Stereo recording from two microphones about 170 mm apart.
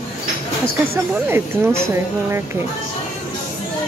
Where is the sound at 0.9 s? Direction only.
15° right (ahead or behind).